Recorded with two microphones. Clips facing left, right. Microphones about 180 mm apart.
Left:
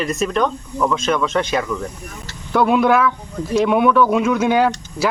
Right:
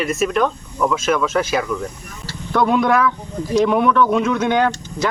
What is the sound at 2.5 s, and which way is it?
Speech, 5° left (ahead or behind).